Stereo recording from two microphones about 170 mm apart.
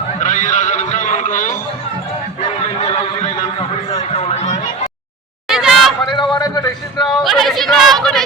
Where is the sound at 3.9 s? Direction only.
40° left (ahead or behind).